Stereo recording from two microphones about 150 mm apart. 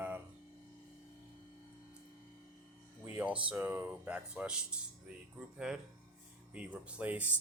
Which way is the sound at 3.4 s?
15° right (ahead or behind).